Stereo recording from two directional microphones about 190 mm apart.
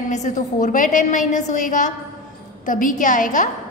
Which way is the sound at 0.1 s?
40° left (ahead or behind).